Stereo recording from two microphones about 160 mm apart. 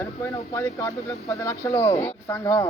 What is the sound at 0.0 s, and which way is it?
Speech, 20° left (ahead or behind).